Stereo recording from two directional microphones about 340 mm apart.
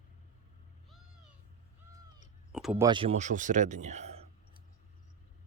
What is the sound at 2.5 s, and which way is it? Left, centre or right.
Speech, centre.